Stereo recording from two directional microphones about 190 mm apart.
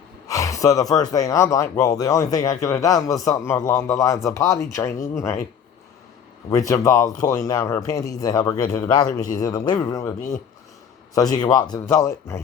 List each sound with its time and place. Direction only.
0.3 s speech: 15° left (ahead or behind)
6.5 s speech: 15° left (ahead or behind)
10.2 s speech: 45° left (ahead or behind)
11.1 s speech: 20° left (ahead or behind)